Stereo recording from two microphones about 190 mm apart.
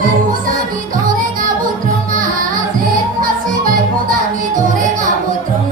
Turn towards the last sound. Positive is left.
turn(degrees=-45)  # may be behind; listen again after turning